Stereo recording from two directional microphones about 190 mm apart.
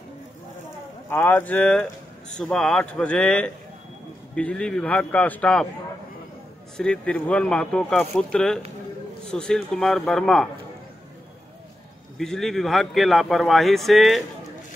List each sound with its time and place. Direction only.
1.1 s speech: 10° left (ahead or behind)
6.8 s speech: 5° left (ahead or behind)
12.2 s speech: centre (ahead or behind)